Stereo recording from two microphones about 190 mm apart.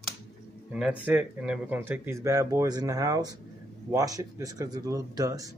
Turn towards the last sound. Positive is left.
turn(degrees=-20)  # may be behind; listen again after turning